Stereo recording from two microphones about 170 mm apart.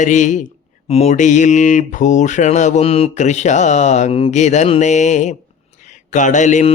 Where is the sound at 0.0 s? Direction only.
45° left (ahead or behind).